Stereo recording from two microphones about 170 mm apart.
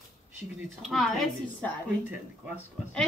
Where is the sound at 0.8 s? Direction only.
Centre (ahead or behind).